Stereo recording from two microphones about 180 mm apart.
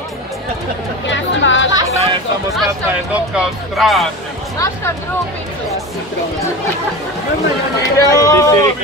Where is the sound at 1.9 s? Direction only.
35° right (ahead or behind).